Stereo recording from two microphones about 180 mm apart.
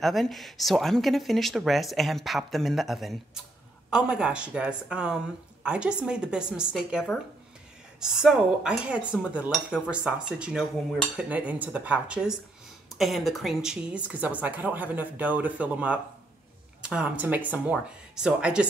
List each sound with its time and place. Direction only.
0.0 s speech: centre (ahead or behind)